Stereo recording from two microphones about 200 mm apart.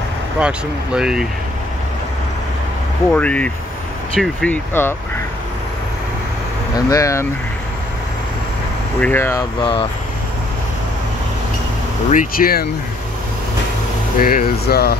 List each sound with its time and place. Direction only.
0.4 s speech: 5° right (ahead or behind)
3.1 s speech: 5° left (ahead or behind)
6.7 s speech: 15° left (ahead or behind)
9.0 s speech: 10° left (ahead or behind)
9.6 s speech: 25° left (ahead or behind)
12.1 s speech: 45° left (ahead or behind)
14.1 s speech: 45° left (ahead or behind)